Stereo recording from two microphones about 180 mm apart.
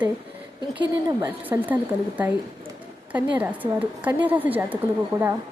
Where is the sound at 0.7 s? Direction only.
15° right (ahead or behind).